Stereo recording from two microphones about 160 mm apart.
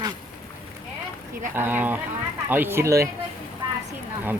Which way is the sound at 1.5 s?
10° right (ahead or behind).